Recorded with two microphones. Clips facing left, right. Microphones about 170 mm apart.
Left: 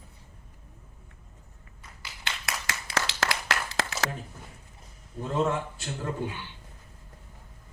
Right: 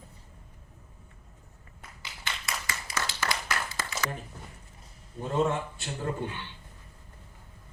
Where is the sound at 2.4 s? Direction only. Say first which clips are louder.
Left 2 dB; 80° left.